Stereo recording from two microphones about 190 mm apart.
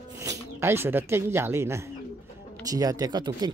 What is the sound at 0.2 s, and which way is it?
Speech, 15° right (ahead or behind).